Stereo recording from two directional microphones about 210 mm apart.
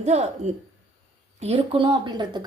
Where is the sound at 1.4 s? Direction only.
25° right (ahead or behind).